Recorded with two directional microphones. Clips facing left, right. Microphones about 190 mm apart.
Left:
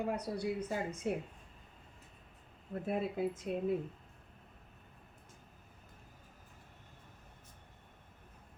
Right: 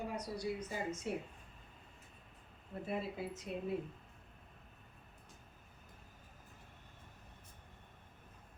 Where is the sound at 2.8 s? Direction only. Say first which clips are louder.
Left 6 dB; 50° left (ahead or behind).